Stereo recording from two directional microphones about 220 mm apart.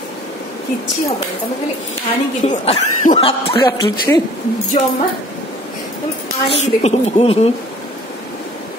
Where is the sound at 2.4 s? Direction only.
30° left (ahead or behind).